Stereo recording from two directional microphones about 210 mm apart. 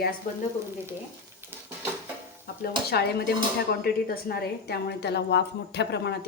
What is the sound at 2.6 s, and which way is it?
Speech, 50° left (ahead or behind).